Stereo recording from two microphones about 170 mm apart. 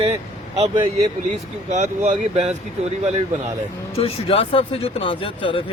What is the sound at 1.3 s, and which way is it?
Speech, 45° right (ahead or behind).